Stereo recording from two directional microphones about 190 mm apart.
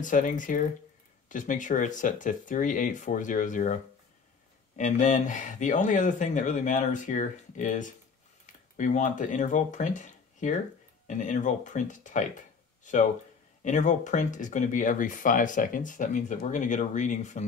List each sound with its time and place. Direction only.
0.0 s speech: 45° left (ahead or behind)